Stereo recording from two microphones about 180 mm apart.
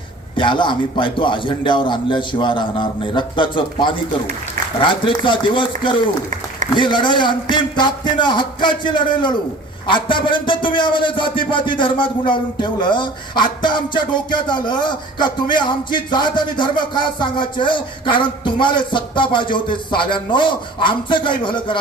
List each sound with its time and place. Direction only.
0.3 s speech: 25° left (ahead or behind)